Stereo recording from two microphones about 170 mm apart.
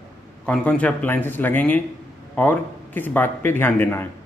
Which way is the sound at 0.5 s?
5° left (ahead or behind).